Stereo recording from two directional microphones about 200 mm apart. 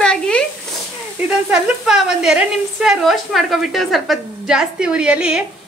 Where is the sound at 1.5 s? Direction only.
5° right (ahead or behind).